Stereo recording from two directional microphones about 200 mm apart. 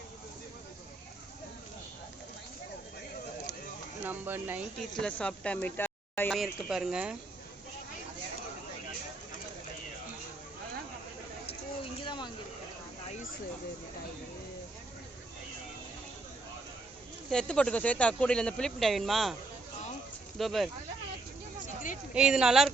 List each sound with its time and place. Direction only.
4.0 s speech: 10° right (ahead or behind)
4.8 s speech: 5° left (ahead or behind)
11.4 s a sound: 25° left (ahead or behind)
17.2 s speech: 5° left (ahead or behind)
20.4 s speech: centre (ahead or behind)
22.1 s speech: 5° right (ahead or behind)